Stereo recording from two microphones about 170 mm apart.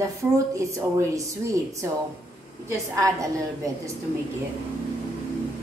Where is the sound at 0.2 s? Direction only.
15° right (ahead or behind).